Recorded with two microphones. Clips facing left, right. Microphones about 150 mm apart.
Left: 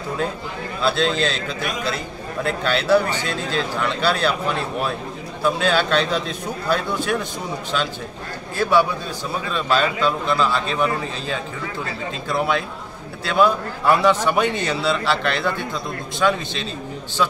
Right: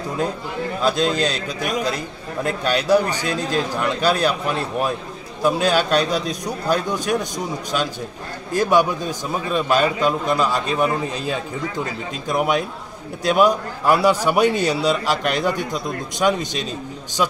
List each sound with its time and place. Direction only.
0.8 s a man's voice: 15° right (ahead or behind)
5.4 s a man's voice: 15° right (ahead or behind)
8.5 s a man's voice: 15° right (ahead or behind)